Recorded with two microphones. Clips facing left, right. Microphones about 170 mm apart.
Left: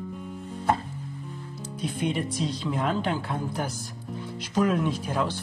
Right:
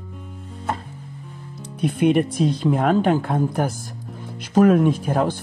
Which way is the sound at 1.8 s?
60° right (ahead or behind).